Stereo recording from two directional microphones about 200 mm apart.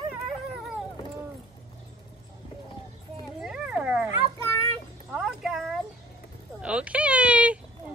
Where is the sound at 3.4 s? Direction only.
5° right (ahead or behind).